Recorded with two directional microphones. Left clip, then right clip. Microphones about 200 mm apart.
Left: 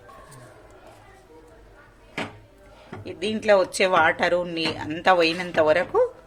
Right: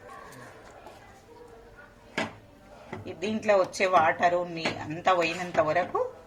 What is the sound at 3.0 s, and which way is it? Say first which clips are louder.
A woman's voice: left 5 dB; 40° left (ahead or behind).